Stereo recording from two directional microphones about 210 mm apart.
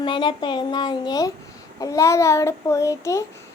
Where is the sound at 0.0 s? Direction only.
20° left (ahead or behind).